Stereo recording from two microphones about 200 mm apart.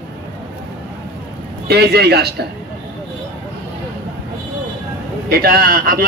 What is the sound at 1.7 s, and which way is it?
Speech, 55° right (ahead or behind).